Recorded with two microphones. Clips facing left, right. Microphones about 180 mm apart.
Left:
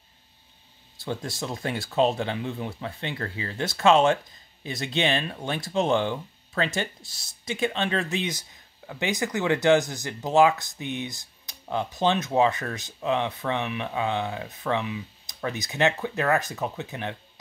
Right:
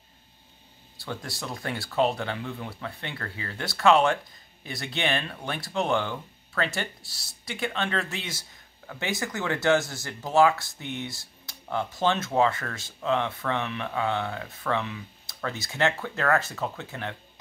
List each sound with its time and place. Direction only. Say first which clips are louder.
0.9 s speech: left 4 dB; 20° left (ahead or behind)